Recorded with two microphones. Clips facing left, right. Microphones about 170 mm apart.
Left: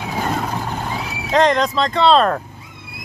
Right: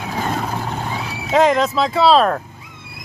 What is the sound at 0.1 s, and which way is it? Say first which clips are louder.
Vehicle: even; centre (ahead or behind).